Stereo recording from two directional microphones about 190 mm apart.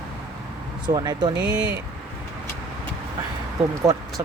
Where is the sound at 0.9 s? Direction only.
20° right (ahead or behind).